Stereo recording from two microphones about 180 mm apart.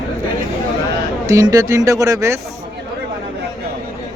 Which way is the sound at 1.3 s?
20° right (ahead or behind).